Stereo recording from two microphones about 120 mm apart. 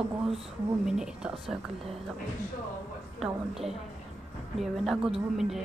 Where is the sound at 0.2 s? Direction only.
5° right (ahead or behind).